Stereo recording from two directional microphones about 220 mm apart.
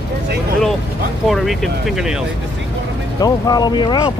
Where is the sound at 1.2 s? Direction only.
Centre (ahead or behind).